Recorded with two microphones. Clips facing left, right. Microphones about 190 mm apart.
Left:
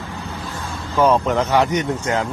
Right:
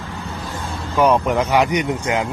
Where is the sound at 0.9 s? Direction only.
15° right (ahead or behind).